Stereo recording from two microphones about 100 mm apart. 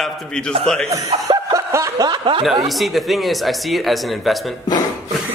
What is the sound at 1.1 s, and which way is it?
Chuckle, 45° right (ahead or behind).